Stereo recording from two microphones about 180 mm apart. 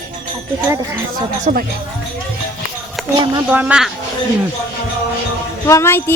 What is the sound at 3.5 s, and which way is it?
Speech, 10° right (ahead or behind).